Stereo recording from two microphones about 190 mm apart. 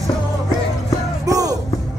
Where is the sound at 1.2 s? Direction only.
20° right (ahead or behind).